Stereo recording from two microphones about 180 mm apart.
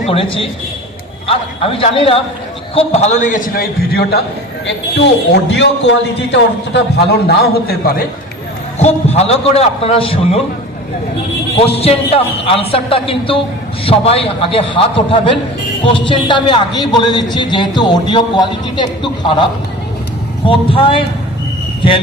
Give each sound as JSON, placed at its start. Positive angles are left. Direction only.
{"t": 0.1, "sound": "a man's voice", "side_deg": 30}
{"t": 4.6, "sound": "a man's voice", "side_deg": 75}
{"t": 7.3, "sound": "a man's voice", "side_deg": 55}
{"t": 8.8, "sound": "speech", "side_deg": 35}
{"t": 11.5, "sound": "a man's voice", "side_deg": 35}
{"t": 20.4, "sound": "a man's voice", "side_deg": 30}